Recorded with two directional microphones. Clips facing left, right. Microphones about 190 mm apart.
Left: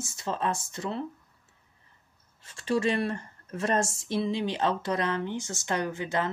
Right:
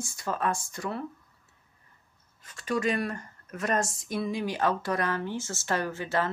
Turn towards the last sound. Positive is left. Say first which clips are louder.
# even
turn(degrees=20)  # may be behind; listen again after turning